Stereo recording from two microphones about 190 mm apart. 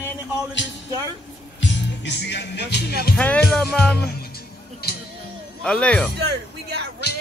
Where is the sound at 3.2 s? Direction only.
5° left (ahead or behind).